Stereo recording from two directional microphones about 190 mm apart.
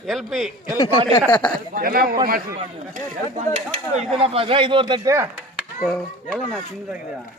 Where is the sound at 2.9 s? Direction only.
40° right (ahead or behind); by 5.2 s 20° right (ahead or behind).